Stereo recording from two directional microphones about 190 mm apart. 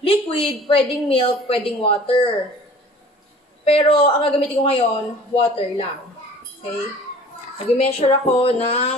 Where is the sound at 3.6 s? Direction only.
30° left (ahead or behind).